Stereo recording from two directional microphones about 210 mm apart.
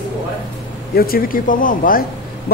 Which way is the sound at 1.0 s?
45° left (ahead or behind).